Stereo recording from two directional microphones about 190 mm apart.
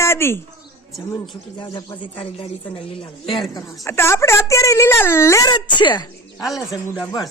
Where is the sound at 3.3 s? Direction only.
15° left (ahead or behind).